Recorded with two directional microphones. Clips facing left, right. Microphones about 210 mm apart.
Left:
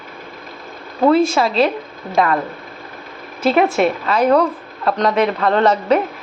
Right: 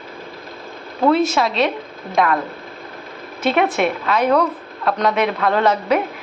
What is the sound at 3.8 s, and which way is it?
Speech, centre (ahead or behind).